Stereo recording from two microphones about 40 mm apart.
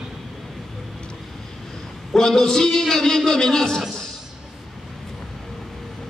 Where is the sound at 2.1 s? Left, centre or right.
Centre.